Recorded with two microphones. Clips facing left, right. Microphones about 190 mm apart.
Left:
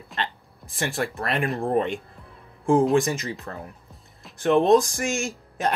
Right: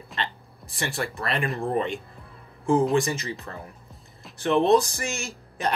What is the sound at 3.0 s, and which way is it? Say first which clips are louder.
Speech: left 2 dB; 50° left (ahead or behind).